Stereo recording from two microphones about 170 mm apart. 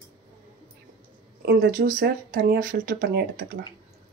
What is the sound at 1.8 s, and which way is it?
Speech, 50° right (ahead or behind).